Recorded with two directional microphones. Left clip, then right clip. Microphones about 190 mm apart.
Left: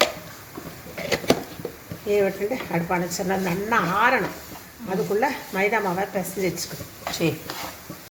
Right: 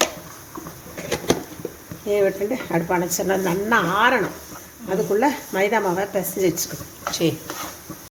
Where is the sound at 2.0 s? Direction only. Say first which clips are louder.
Right 2 dB; 60° right (ahead or behind).